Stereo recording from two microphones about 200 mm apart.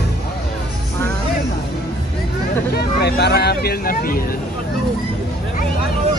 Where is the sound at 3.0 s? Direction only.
55° left (ahead or behind).